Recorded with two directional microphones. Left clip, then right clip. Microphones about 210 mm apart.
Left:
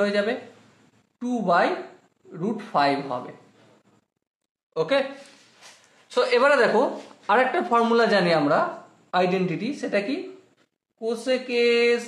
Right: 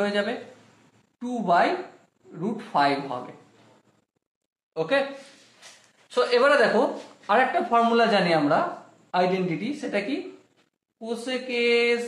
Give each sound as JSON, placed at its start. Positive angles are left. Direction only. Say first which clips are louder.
{"t": 0.0, "sound": "speech", "louder": "left 2 dB", "side_deg": 30}
{"t": 4.7, "sound": "speech", "louder": "left 1 dB", "side_deg": 35}
{"t": 6.0, "sound": "speech", "louder": "left 1 dB", "side_deg": 30}